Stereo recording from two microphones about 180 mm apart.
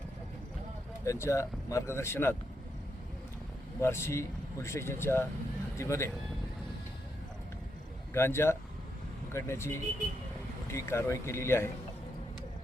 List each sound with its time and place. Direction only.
1.0 s speech: 15° left (ahead or behind)
3.8 s speech: 15° left (ahead or behind)
8.1 s speech: 15° left (ahead or behind)